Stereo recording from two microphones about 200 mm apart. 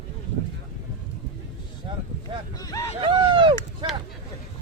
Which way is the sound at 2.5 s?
20° left (ahead or behind).